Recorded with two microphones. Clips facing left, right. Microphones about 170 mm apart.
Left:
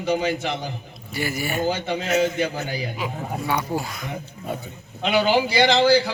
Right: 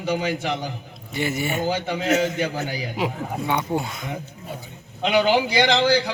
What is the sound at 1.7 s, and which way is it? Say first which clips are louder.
A man's voice: right 3 dB; 15° right (ahead or behind).